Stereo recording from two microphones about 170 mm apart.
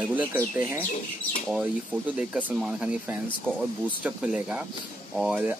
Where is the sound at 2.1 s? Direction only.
5° right (ahead or behind).